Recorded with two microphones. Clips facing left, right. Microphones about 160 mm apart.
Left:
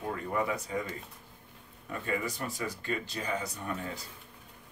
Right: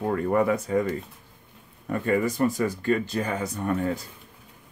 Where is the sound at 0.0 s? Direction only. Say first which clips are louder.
Right 10 dB; 60° right (ahead or behind).